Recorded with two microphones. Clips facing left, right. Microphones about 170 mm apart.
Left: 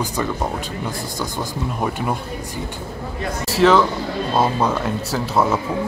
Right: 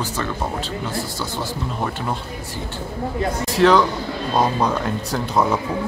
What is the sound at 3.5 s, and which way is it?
Speech, centre (ahead or behind).